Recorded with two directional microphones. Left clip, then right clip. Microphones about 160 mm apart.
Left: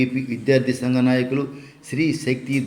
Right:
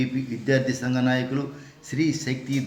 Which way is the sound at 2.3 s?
35° right (ahead or behind).